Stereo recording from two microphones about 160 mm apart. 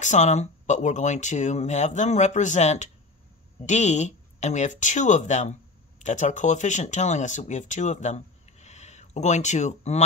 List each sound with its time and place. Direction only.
0.0 s speech: 50° left (ahead or behind)